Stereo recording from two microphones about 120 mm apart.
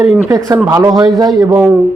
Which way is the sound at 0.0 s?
30° right (ahead or behind).